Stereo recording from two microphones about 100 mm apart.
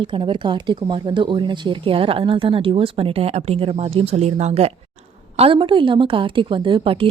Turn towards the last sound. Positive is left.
turn(degrees=-60)  # may be behind; listen again after turning